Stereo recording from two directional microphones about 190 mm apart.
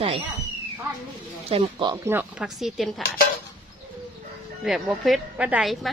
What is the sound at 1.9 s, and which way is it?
Speech, 15° right (ahead or behind).